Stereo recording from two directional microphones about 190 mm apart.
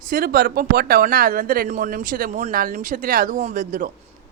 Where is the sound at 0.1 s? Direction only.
50° right (ahead or behind).